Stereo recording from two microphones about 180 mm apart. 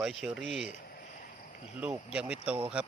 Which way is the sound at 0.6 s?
50° left (ahead or behind).